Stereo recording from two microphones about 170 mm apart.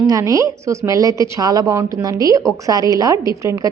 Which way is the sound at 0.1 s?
20° right (ahead or behind).